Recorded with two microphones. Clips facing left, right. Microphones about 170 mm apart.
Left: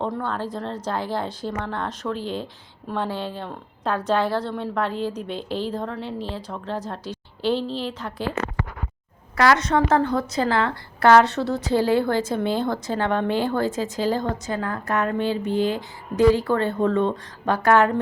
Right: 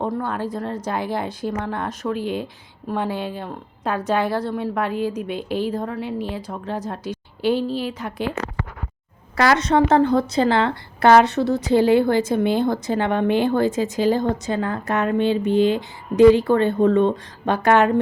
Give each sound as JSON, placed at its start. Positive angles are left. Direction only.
{"t": 0.0, "sound": "speech", "side_deg": -10}
{"t": 9.4, "sound": "a woman's voice", "side_deg": -25}